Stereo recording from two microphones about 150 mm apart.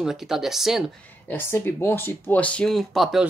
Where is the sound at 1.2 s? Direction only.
15° left (ahead or behind).